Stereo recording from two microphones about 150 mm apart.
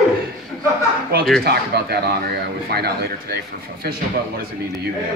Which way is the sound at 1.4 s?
90° right.